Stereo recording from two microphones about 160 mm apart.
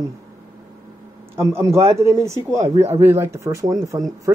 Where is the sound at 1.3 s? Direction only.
15° right (ahead or behind).